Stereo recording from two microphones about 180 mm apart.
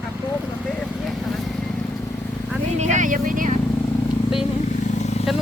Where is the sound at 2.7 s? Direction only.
40° right (ahead or behind).